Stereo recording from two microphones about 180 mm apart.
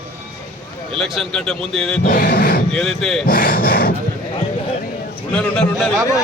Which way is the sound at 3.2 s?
50° left (ahead or behind).